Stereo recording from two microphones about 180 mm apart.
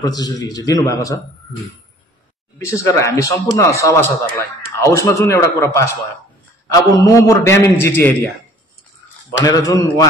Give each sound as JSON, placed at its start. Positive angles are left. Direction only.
{"t": 0.0, "sound": "a man's voice", "side_deg": 20}
{"t": 2.6, "sound": "speech", "side_deg": 15}
{"t": 9.4, "sound": "a man's voice", "side_deg": 20}